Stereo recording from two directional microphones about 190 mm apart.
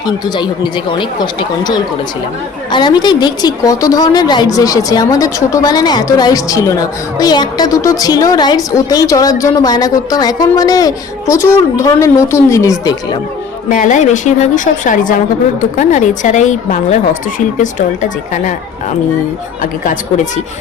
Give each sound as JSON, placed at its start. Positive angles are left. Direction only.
{"t": 0.0, "sound": "a woman's voice", "side_deg": 20}
{"t": 13.7, "sound": "a woman's voice", "side_deg": 45}
{"t": 19.8, "sound": "a woman's voice", "side_deg": 40}